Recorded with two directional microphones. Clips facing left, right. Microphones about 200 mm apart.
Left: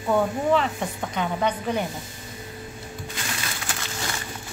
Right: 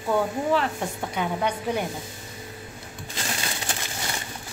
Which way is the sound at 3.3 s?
20° right (ahead or behind).